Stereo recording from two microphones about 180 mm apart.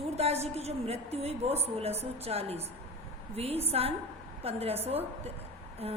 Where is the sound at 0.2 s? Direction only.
35° right (ahead or behind).